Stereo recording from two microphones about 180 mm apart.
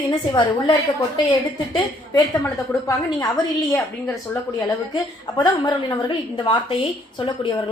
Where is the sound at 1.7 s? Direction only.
20° left (ahead or behind).